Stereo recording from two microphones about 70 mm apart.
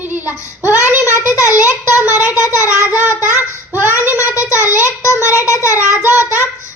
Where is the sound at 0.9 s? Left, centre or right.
Right.